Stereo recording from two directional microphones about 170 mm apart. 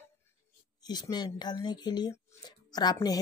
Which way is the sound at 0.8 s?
25° left (ahead or behind).